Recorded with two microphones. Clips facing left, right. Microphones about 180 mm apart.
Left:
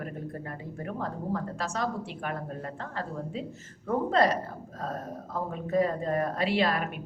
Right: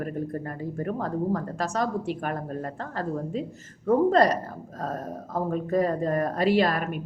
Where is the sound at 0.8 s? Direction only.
45° right (ahead or behind).